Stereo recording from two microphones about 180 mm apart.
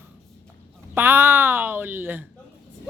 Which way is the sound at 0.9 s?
10° right (ahead or behind).